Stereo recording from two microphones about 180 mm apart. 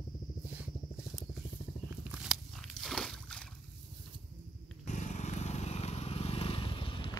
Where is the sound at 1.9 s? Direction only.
5° right (ahead or behind).